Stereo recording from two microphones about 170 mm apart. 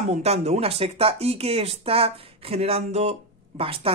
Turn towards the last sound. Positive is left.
turn(degrees=-35)  # may be behind; listen again after turning